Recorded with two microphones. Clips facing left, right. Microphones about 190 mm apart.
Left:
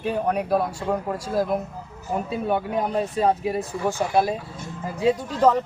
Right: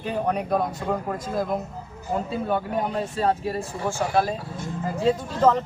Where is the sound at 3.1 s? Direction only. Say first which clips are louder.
Left 2 dB; 15° left (ahead or behind).